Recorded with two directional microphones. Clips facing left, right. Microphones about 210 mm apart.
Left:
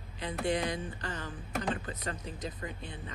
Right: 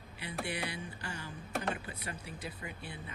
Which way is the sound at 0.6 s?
10° right (ahead or behind).